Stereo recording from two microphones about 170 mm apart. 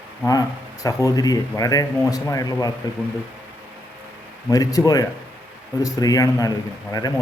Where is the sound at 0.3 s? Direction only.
20° left (ahead or behind).